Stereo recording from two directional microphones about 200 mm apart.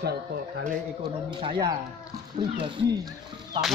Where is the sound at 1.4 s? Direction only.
25° right (ahead or behind).